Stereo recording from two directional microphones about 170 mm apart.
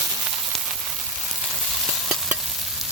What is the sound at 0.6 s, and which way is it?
Frying, 5° right (ahead or behind).